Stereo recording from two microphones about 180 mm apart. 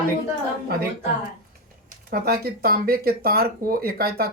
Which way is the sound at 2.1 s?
60° right (ahead or behind).